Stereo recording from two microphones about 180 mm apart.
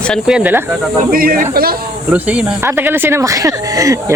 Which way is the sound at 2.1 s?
10° right (ahead or behind).